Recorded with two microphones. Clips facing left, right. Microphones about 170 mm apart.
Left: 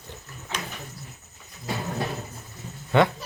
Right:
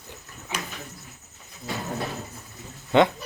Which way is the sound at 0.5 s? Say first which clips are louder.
Right 1 dB; 15° right (ahead or behind).